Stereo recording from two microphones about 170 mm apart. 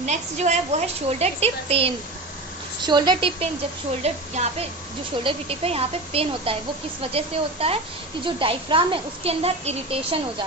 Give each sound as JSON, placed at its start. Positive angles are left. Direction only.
{"t": 0.0, "sound": "a child's voice", "side_deg": -40}
{"t": 4.0, "sound": "a child's voice", "side_deg": -40}